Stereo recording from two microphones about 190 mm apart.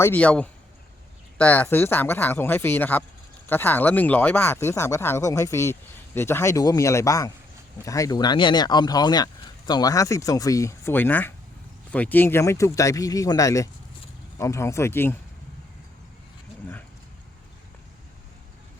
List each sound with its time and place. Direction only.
0.0 s speech: 10° left (ahead or behind)